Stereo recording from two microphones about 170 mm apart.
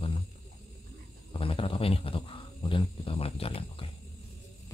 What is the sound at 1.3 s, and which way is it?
Speech, 30° left (ahead or behind).